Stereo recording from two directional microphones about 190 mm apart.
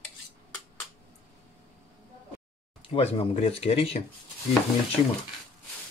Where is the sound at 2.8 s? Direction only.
30° left (ahead or behind).